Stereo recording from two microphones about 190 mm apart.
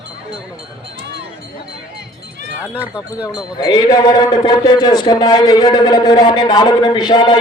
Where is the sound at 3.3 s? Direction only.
20° left (ahead or behind).